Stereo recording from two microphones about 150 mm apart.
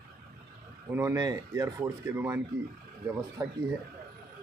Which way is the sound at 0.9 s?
20° right (ahead or behind).